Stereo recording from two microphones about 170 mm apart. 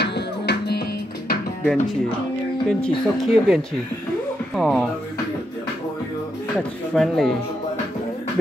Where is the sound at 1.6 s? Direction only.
Centre (ahead or behind).